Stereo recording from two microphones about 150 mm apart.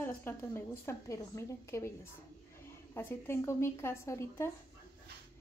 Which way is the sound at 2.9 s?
15° left (ahead or behind).